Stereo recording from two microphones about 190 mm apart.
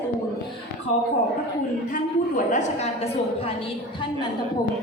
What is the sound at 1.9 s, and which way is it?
A woman's voice, 40° left (ahead or behind).